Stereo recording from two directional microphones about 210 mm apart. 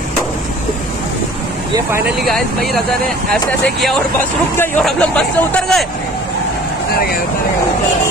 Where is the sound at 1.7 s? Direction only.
10° right (ahead or behind).